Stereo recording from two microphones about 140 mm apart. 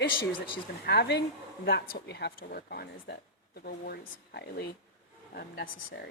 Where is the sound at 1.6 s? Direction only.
90° left.